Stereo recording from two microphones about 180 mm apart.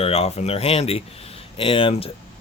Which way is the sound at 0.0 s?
35° left (ahead or behind).